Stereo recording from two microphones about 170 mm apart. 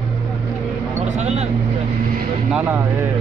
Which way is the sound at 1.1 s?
40° right (ahead or behind).